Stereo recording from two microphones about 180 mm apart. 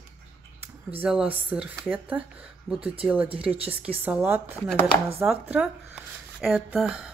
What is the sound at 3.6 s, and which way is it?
Speech, 10° right (ahead or behind).